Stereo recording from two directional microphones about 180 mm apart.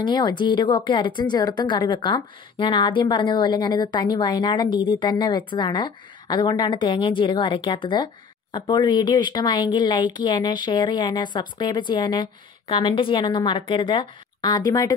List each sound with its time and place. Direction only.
0.0 s a woman's voice: 25° left (ahead or behind)